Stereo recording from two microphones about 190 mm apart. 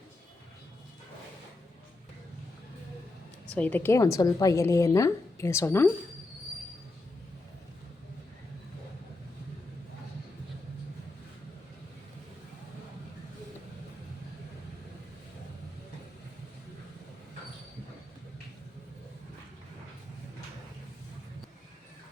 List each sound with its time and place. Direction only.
3.5 s a woman's voice: 10° left (ahead or behind)